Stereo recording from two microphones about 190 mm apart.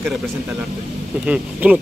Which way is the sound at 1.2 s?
5° right (ahead or behind).